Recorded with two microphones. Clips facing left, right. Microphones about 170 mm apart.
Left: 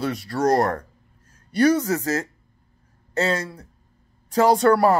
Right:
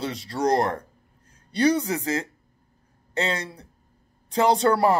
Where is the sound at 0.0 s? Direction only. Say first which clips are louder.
Left 3 dB; 25° right (ahead or behind).